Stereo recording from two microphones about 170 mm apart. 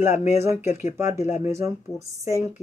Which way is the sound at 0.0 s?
15° right (ahead or behind).